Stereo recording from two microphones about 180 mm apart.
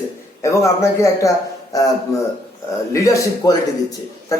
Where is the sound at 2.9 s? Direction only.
15° left (ahead or behind).